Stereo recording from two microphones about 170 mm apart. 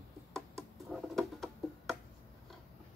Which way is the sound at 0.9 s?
Centre (ahead or behind).